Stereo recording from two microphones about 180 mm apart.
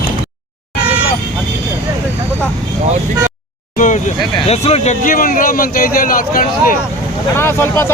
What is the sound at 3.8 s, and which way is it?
Speech, 45° left (ahead or behind).